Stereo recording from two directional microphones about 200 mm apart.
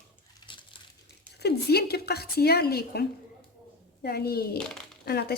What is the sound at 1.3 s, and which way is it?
A woman's voice, 55° left (ahead or behind).